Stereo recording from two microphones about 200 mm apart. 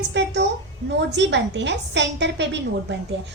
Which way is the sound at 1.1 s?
60° right (ahead or behind).